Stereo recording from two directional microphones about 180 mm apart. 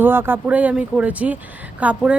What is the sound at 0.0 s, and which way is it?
Speech, 10° right (ahead or behind).